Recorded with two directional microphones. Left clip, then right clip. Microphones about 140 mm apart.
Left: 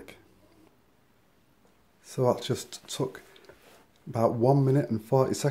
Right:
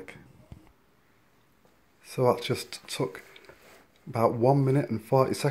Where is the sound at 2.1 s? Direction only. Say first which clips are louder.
Right 1 dB; 15° left (ahead or behind).